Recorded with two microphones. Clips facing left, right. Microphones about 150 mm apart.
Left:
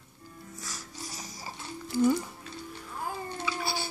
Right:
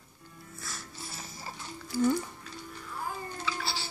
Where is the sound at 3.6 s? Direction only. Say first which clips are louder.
Left 4 dB; 50° left (ahead or behind).